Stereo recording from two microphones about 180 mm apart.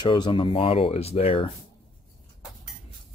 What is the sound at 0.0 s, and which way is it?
Speech, 25° left (ahead or behind).